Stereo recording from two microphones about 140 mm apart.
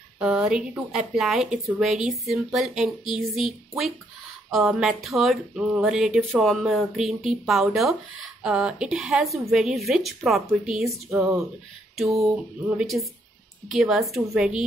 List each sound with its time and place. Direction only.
0.2 s speech: 5° right (ahead or behind)
4.5 s speech: 5° right (ahead or behind)
10.9 s speech: 20° right (ahead or behind)
12.0 s speech: 5° right (ahead or behind)